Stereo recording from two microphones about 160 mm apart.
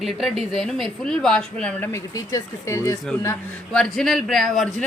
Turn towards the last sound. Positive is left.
turn(degrees=0)  # may be behind; listen again after turning